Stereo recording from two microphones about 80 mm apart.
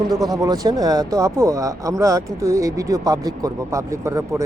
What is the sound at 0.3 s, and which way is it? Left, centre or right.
Speech, right.